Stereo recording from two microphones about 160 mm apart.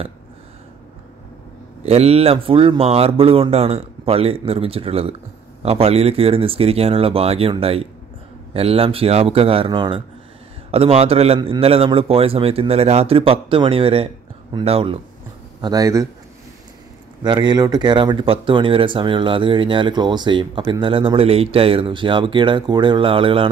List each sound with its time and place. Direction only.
1.9 s speech: 40° right (ahead or behind)
15.6 s speech: 20° right (ahead or behind)
17.2 s speech: 25° right (ahead or behind)